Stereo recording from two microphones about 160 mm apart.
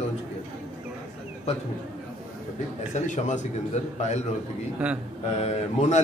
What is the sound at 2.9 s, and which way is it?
A man's voice, 50° left (ahead or behind).